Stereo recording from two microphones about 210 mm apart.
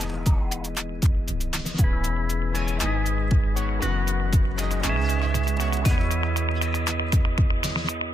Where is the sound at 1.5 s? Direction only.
Centre (ahead or behind).